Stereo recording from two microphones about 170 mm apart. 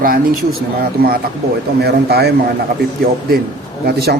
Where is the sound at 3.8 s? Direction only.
70° right (ahead or behind).